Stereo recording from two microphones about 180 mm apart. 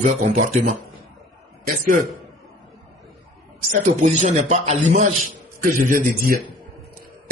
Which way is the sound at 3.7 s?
40° right (ahead or behind).